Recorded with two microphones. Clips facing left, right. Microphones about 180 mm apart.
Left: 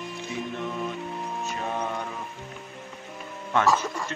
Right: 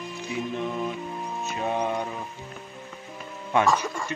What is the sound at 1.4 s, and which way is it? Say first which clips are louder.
Music: right 5 dB; 15° right (ahead or behind).